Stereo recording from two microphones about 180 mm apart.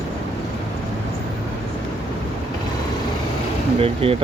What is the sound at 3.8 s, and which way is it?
Speech, 30° right (ahead or behind).